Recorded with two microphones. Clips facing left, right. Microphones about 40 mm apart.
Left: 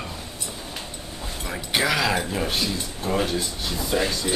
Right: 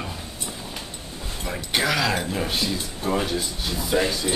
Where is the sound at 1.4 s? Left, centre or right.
Centre.